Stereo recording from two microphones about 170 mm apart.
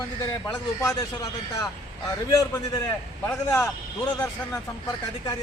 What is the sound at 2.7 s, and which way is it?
Speech, 20° left (ahead or behind).